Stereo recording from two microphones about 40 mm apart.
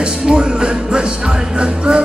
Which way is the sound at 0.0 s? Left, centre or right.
Right.